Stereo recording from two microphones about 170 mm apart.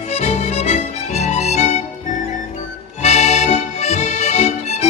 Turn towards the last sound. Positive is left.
turn(degrees=40)  # may be behind; listen again after turning